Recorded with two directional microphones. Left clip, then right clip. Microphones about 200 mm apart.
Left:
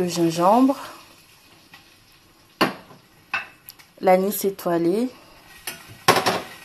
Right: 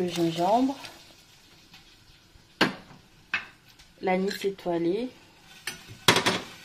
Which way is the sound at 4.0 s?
20° left (ahead or behind).